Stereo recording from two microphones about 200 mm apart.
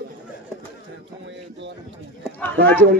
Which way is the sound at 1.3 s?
65° right (ahead or behind).